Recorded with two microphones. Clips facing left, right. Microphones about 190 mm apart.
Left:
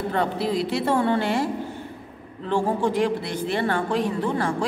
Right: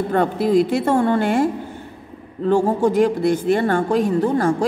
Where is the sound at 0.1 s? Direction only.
50° right (ahead or behind).